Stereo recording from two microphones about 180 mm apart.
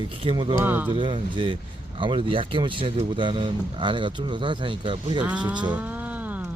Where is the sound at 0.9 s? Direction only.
25° right (ahead or behind).